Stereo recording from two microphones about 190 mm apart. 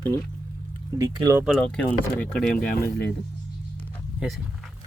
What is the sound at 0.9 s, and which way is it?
Speech, 20° right (ahead or behind).